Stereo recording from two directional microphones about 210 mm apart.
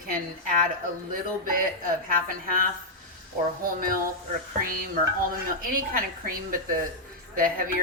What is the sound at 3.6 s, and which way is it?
Speech, 40° right (ahead or behind).